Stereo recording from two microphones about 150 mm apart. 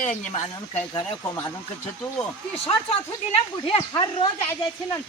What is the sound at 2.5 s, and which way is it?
Speech, 40° left (ahead or behind).